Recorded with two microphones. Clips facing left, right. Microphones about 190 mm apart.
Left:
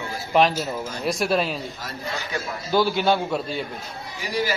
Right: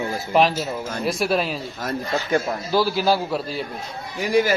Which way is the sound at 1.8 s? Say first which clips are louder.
Right 7 dB; 50° right (ahead or behind).